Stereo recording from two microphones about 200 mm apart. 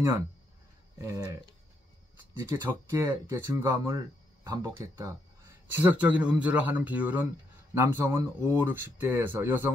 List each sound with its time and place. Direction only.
0.9 s speech: 15° right (ahead or behind)
2.4 s speech: 15° right (ahead or behind)